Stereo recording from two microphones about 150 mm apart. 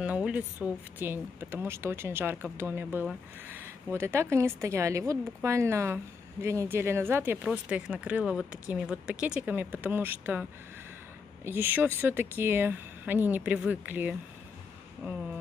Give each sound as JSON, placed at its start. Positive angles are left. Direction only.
{"t": 0.0, "sound": "a woman's voice", "side_deg": -10}
{"t": 11.4, "sound": "speech", "side_deg": -15}